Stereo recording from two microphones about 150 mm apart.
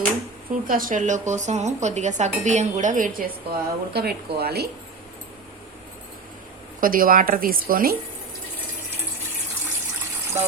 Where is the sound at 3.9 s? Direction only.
90° right.